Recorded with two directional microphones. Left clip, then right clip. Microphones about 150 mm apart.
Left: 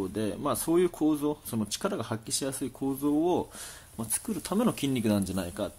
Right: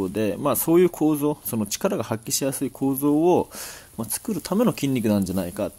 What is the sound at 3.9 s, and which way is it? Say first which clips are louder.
Speech: right 6 dB; 30° right (ahead or behind).